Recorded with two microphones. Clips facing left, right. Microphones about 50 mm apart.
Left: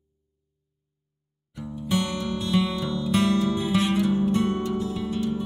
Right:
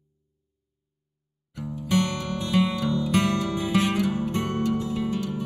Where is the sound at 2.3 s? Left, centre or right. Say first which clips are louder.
Right 1 dB; right.